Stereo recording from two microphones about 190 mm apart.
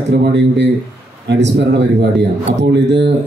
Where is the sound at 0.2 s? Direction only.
65° right (ahead or behind).